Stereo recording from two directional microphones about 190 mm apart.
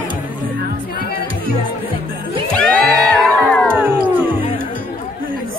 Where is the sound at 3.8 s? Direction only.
10° right (ahead or behind).